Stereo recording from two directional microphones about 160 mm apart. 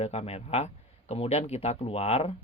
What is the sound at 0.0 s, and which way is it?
Speech, 40° left (ahead or behind).